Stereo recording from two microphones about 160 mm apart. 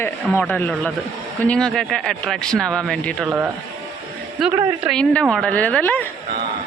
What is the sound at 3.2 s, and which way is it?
Speech, 10° right (ahead or behind).